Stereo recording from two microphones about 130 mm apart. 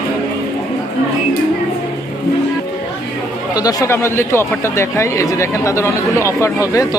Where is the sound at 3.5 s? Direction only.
25° left (ahead or behind).